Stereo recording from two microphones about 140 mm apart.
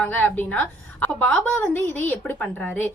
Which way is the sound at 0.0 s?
15° left (ahead or behind).